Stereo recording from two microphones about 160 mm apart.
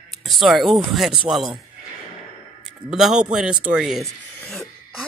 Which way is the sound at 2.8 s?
5° right (ahead or behind).